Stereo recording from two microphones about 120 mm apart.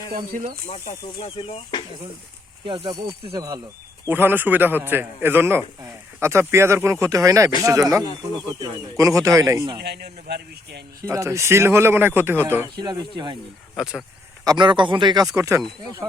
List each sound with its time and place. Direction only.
0.3 s speech: 90° right
1.2 s speech: 55° left (ahead or behind)
2.6 s speech: 50° right (ahead or behind)
3.3 s speech: 30° right (ahead or behind)
4.1 s a man's voice: 15° right (ahead or behind)
11.0 s speech: 25° right (ahead or behind)
12.8 s speech: 35° right (ahead or behind)
13.7 s speech: 5° right (ahead or behind)
14.4 s speech: 40° right (ahead or behind)